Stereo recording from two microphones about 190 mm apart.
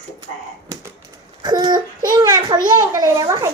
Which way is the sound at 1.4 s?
20° right (ahead or behind).